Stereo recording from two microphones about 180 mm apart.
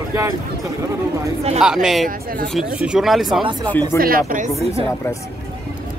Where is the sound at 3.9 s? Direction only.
55° right (ahead or behind).